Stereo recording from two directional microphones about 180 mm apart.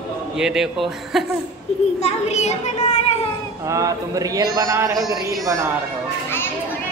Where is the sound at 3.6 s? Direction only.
15° right (ahead or behind).